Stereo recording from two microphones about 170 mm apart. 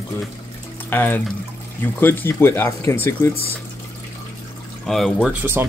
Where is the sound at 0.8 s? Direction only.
10° left (ahead or behind).